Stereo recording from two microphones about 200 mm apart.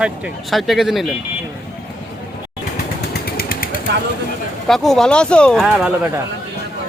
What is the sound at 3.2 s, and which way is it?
Vehicle, 50° left (ahead or behind).